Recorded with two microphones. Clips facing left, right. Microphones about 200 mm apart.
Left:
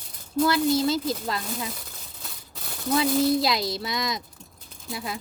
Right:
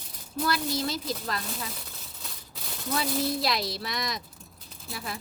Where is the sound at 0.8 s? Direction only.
25° left (ahead or behind).